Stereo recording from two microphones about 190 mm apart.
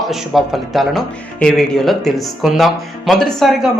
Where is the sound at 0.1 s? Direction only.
Centre (ahead or behind).